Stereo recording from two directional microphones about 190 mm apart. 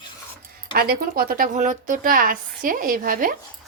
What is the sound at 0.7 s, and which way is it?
Speech, 50° right (ahead or behind).